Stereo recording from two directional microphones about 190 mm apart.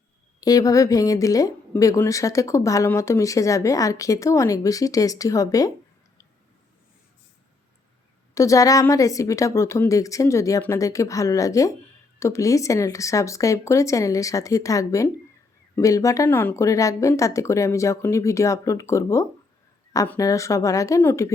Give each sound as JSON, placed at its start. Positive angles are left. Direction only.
{"t": 0.3, "sound": "speech", "side_deg": 20}
{"t": 8.4, "sound": "speech", "side_deg": 15}